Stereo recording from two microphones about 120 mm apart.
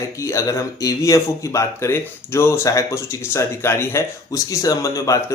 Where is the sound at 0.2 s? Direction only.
25° left (ahead or behind).